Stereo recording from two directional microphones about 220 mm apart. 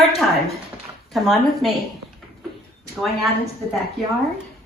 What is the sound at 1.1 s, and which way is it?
Speech, centre (ahead or behind).